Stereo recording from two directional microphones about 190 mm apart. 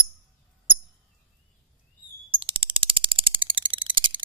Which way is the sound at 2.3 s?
30° right (ahead or behind).